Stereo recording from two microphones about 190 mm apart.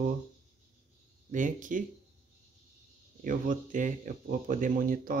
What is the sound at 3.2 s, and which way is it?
Speech, 45° right (ahead or behind).